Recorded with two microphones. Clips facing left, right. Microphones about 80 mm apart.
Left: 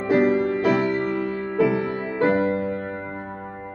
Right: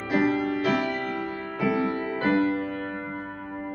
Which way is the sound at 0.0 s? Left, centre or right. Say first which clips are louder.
Left 5 dB; left.